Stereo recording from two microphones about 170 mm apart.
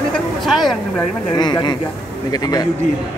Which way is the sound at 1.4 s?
25° left (ahead or behind).